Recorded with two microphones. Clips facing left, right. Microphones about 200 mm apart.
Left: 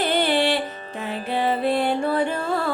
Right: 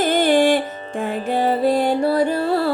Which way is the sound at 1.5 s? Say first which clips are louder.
Right 4 dB; 40° right (ahead or behind).